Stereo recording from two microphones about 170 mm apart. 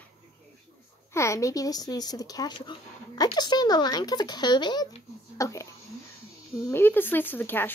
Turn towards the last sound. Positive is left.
turn(degrees=10)  # may be behind; listen again after turning